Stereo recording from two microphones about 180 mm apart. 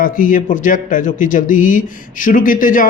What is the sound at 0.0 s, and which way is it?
Speech, 50° left (ahead or behind).